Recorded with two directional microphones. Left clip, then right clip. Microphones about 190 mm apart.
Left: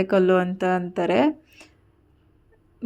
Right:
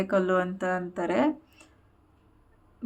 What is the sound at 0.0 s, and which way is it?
Speech, 25° left (ahead or behind).